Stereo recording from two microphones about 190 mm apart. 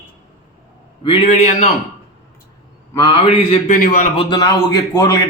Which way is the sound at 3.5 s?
45° left (ahead or behind).